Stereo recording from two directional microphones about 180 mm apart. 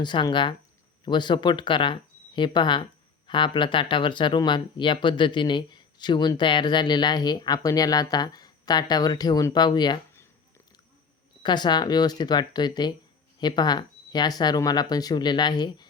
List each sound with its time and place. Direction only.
0.0 s speech: 25° left (ahead or behind)
11.4 s speech: 25° left (ahead or behind)